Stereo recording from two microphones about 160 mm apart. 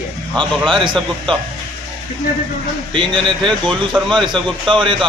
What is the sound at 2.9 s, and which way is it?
Speech, 30° right (ahead or behind).